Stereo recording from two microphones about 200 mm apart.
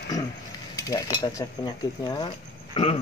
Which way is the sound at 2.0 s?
20° left (ahead or behind).